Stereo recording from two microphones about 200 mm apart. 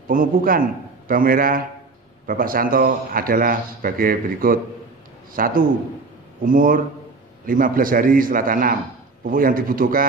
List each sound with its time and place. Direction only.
0.1 s a man's voice: 45° right (ahead or behind)